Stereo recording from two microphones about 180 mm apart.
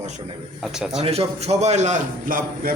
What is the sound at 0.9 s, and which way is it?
A man's voice, 35° right (ahead or behind).